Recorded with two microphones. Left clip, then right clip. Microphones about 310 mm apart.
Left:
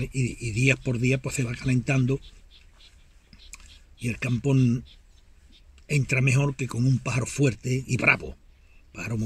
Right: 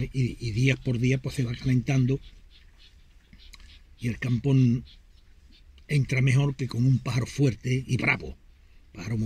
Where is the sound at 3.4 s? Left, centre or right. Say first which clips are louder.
Left 3 dB; centre.